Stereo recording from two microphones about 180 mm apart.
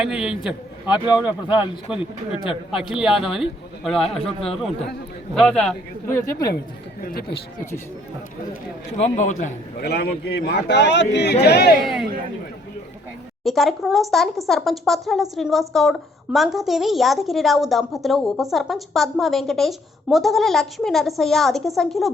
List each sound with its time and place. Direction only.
0.0 s speech: 5° right (ahead or behind)
0.9 s a man's voice: 25° left (ahead or behind)
1.2 s a man's voice: 10° right (ahead or behind)
6.1 s speech: 15° left (ahead or behind)
7.0 s speech: 60° left (ahead or behind)
9.0 s a man's voice: 40° left (ahead or behind)
9.8 s a man's voice: 65° left (ahead or behind)
13.4 s speech: centre (ahead or behind)